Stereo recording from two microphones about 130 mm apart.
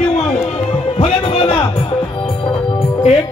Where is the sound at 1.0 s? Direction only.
50° left (ahead or behind).